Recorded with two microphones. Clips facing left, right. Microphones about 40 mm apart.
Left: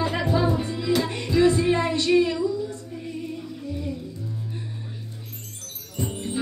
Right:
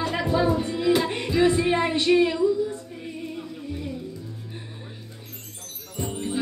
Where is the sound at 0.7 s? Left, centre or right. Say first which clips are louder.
Right 2 dB; right.